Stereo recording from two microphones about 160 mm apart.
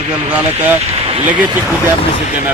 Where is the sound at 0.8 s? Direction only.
40° right (ahead or behind).